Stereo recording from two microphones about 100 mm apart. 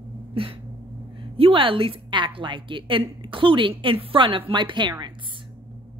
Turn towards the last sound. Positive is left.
turn(degrees=-50)  # may be behind; listen again after turning